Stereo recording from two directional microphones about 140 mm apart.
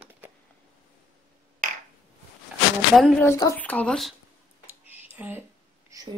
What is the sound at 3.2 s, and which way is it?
Speech, 25° left (ahead or behind).